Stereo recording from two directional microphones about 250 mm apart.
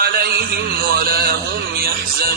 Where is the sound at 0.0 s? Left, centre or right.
Right.